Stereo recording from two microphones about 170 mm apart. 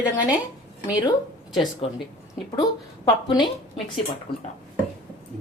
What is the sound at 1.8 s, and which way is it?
Speech, 35° left (ahead or behind).